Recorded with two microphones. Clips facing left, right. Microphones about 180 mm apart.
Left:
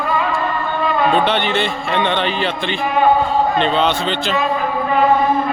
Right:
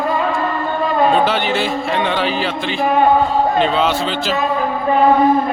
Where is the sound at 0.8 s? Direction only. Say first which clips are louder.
Right 2 dB; 40° right (ahead or behind).